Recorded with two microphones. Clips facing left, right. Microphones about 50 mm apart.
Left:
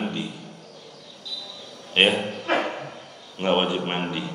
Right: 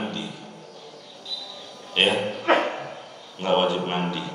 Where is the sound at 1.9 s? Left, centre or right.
Left.